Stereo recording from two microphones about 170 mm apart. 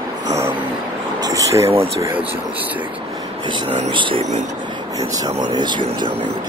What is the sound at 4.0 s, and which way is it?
Speech, 30° right (ahead or behind).